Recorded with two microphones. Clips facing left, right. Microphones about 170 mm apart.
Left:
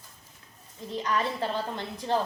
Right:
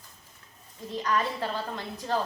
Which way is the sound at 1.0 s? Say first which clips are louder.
Even; 20° left (ahead or behind).